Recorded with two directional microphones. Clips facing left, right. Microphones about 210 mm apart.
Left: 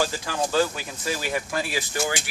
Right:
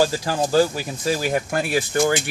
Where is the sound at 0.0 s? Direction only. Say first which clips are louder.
Right 6 dB; 40° right (ahead or behind).